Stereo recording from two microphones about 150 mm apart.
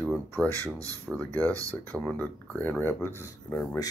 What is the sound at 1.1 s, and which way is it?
Speech, 10° left (ahead or behind).